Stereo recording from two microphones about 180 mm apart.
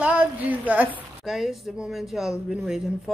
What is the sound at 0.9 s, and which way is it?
Speech, centre (ahead or behind).